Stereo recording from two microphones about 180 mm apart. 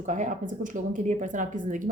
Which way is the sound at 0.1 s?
45° right (ahead or behind).